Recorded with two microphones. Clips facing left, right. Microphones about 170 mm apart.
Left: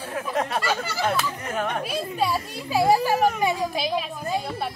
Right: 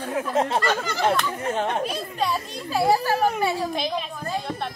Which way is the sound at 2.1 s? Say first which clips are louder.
Left 1 dB; 10° left (ahead or behind).